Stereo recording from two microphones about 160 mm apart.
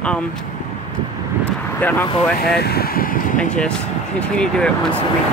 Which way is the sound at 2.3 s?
75° left (ahead or behind).